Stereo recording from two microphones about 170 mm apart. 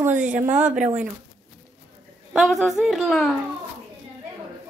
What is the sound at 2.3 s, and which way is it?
A woman's voice, centre (ahead or behind).